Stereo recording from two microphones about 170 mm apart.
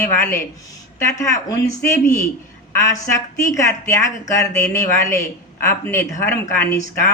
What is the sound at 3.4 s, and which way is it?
Speech, 15° left (ahead or behind).